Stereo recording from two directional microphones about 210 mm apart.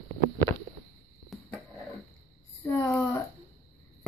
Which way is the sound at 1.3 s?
Centre (ahead or behind).